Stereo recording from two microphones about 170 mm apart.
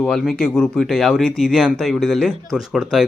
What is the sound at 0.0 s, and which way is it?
Speech, centre (ahead or behind).